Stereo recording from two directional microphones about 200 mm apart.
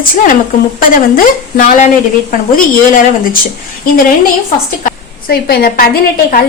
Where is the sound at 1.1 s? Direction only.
45° left (ahead or behind).